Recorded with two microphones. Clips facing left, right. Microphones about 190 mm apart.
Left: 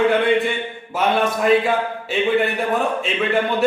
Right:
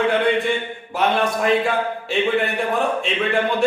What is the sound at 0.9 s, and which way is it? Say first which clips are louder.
Speech: left 1 dB; centre (ahead or behind).